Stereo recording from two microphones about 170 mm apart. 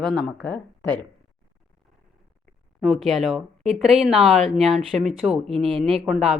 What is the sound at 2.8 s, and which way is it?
Speech, centre (ahead or behind).